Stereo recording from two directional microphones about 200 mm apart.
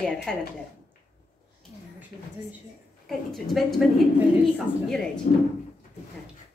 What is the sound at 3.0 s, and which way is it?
Speech, centre (ahead or behind).